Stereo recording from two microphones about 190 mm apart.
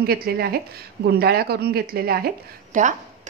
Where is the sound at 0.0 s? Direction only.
55° right (ahead or behind).